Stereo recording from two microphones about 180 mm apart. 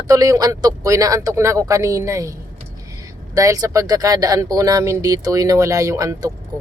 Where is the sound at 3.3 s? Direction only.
20° right (ahead or behind).